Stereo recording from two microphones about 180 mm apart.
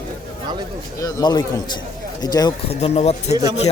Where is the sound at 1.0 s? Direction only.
20° left (ahead or behind).